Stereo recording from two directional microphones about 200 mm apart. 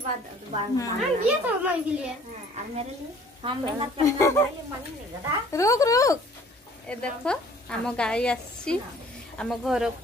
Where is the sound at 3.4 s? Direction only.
25° right (ahead or behind).